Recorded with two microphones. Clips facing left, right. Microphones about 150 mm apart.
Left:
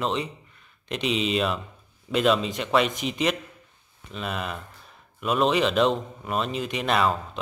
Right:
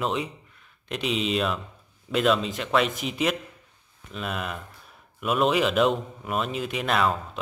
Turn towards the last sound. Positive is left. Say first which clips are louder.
# left 1 dB
turn(degrees=0)  # may be behind; listen again after turning